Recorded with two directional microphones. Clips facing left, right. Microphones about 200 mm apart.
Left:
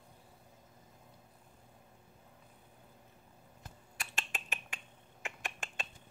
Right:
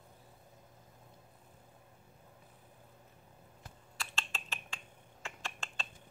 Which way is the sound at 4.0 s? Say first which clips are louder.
Even; 15° left (ahead or behind).